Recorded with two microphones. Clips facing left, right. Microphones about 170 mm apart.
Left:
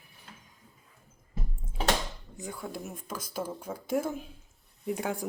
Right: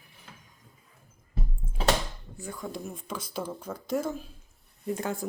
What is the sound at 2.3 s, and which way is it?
Speech, 15° left (ahead or behind).